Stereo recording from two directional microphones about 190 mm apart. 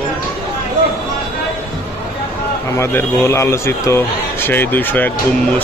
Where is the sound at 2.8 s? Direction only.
15° left (ahead or behind).